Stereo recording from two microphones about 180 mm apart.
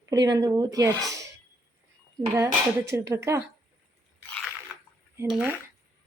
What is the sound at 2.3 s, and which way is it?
A woman's voice, 15° right (ahead or behind).